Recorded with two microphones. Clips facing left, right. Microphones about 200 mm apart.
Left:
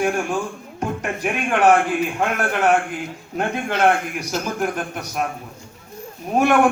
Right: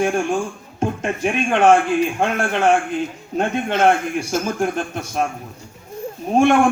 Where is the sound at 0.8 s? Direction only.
25° right (ahead or behind).